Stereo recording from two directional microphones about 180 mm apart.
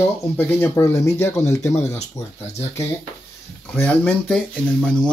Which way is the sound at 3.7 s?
5° left (ahead or behind).